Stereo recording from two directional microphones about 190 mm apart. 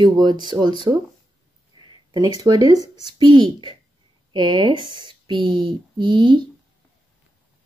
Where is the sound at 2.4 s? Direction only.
20° right (ahead or behind).